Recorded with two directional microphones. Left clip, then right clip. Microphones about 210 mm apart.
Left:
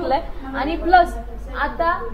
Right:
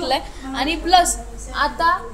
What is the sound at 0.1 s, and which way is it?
A woman's voice, 30° right (ahead or behind).